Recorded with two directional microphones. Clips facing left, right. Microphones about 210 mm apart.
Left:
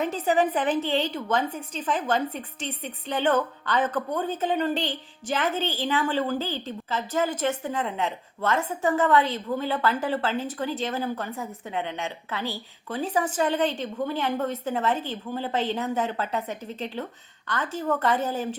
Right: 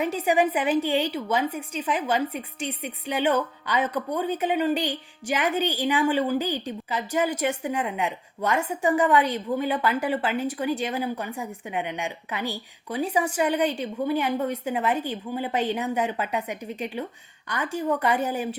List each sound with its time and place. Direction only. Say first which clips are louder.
0.0 s a woman's voice: right 1 dB; 10° right (ahead or behind)